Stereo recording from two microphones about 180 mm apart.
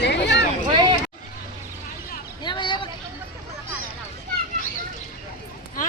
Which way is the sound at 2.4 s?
25° left (ahead or behind).